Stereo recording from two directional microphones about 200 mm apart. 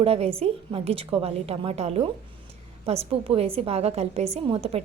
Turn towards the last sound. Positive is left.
turn(degrees=-30)  # may be behind; listen again after turning